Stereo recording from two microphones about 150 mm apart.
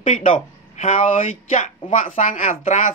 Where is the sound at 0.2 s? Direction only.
60° left (ahead or behind).